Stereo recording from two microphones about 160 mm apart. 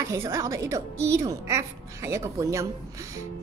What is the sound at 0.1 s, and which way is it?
Speech, 20° right (ahead or behind).